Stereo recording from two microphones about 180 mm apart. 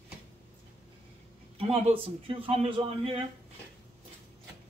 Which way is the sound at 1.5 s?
35° right (ahead or behind).